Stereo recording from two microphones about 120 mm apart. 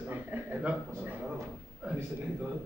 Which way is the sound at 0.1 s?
15° right (ahead or behind).